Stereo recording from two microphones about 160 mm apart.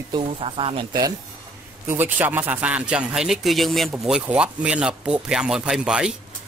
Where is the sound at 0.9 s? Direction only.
25° right (ahead or behind).